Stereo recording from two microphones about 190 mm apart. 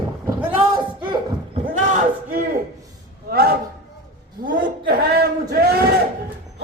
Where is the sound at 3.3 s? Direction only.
55° right (ahead or behind).